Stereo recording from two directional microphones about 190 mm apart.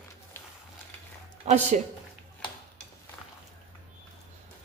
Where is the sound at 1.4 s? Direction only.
35° right (ahead or behind).